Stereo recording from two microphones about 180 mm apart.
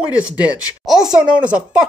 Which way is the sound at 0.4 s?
5° right (ahead or behind).